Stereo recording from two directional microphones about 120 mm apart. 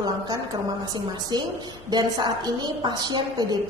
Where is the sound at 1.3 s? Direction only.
35° right (ahead or behind).